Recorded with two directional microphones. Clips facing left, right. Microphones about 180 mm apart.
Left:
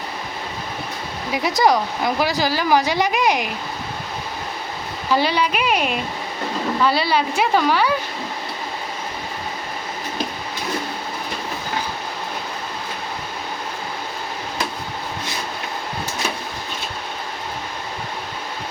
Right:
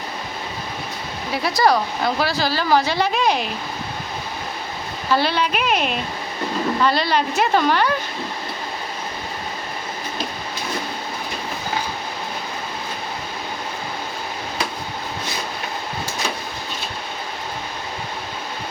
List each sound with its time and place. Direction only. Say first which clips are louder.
1.3 s a woman's voice: left 1 dB; 15° left (ahead or behind)
5.1 s a woman's voice: left 1 dB; 10° left (ahead or behind)